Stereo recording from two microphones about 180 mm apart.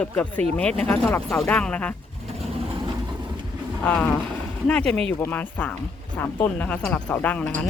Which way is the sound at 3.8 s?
5° left (ahead or behind).